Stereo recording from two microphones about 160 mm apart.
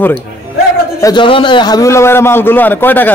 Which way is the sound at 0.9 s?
25° left (ahead or behind).